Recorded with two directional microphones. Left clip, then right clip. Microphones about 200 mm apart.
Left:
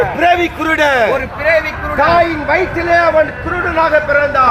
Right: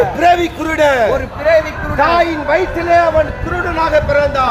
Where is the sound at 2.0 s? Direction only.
50° left (ahead or behind); by 3.1 s 30° left (ahead or behind).